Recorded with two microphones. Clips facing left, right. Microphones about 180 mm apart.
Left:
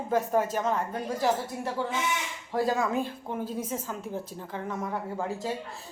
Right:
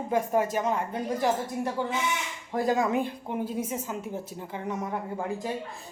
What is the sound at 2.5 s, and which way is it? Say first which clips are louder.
A woman's voice: right 1 dB; 20° right (ahead or behind).